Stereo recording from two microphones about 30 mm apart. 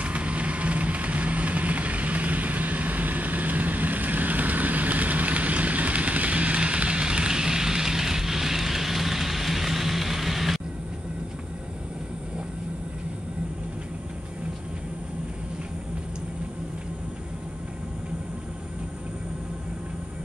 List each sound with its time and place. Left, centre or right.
0.0 s vehicle: right; by 10.6 s centre